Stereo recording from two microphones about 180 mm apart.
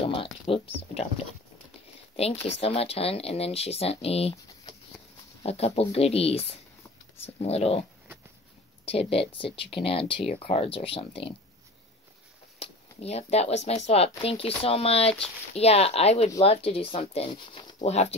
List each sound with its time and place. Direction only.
0.0 s a sound: 30° left (ahead or behind)
2.4 s speech: 35° left (ahead or behind)
8.8 s speech: 30° left (ahead or behind)
12.5 s speech: 35° left (ahead or behind)
17.7 s speech: 35° left (ahead or behind)